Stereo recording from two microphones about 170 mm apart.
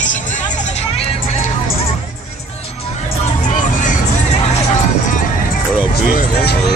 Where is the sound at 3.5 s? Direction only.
50° left (ahead or behind).